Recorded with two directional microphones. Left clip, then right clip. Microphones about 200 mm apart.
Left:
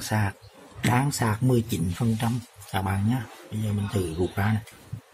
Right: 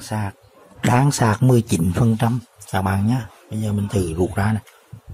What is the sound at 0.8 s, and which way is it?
Speech, 25° right (ahead or behind).